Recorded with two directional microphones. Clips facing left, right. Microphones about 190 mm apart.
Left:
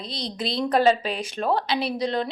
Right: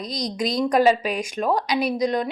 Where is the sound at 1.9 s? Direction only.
30° left (ahead or behind).